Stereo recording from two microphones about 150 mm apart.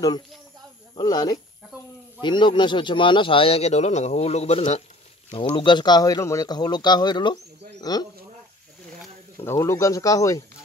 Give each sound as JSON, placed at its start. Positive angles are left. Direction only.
{"t": 0.9, "sound": "a man's voice", "side_deg": 25}
{"t": 9.4, "sound": "speech", "side_deg": 20}